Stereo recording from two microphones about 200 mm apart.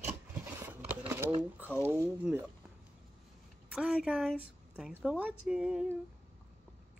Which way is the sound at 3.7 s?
5° right (ahead or behind).